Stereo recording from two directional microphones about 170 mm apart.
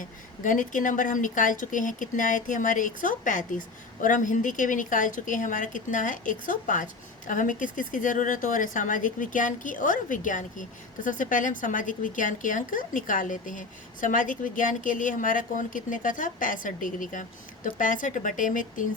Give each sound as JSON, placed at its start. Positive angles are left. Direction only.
{"t": 0.0, "sound": "speech", "side_deg": 50}